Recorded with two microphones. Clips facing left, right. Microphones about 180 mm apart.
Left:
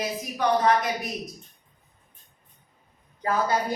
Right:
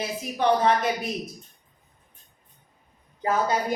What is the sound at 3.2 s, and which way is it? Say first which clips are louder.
Speech: right 1 dB; 20° right (ahead or behind).